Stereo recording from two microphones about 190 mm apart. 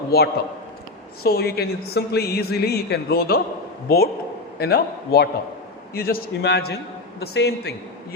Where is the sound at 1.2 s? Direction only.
55° left (ahead or behind).